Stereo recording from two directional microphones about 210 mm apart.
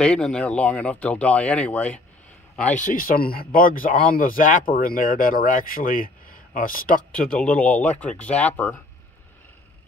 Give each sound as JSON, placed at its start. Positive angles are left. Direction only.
{"t": 0.0, "sound": "speech", "side_deg": 5}
{"t": 2.7, "sound": "speech", "side_deg": 40}
{"t": 7.2, "sound": "speech", "side_deg": 5}